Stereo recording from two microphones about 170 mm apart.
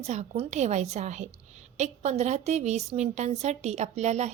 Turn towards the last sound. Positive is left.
turn(degrees=-40)  # may be behind; listen again after turning